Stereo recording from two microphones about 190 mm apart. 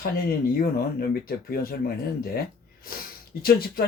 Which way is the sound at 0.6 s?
50° left (ahead or behind).